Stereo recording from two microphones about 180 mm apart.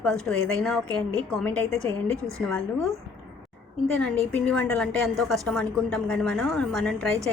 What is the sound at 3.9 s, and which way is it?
A woman's voice, 5° left (ahead or behind).